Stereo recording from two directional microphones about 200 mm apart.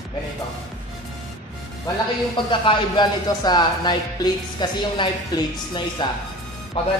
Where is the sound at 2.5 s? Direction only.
25° left (ahead or behind).